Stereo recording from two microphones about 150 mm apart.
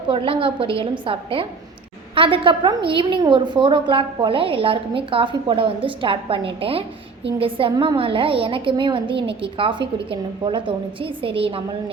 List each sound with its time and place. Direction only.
0.1 s a woman's voice: 35° right (ahead or behind)